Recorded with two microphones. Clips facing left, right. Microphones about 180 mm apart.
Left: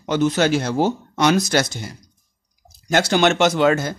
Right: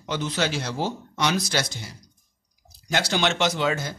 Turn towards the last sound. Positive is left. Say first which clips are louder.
# left 8 dB
turn(degrees=50)  # may be behind; listen again after turning